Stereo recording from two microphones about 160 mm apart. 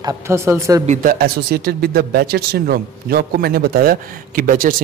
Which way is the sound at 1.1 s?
75° right (ahead or behind).